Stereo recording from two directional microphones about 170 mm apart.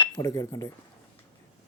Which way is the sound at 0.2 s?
20° left (ahead or behind).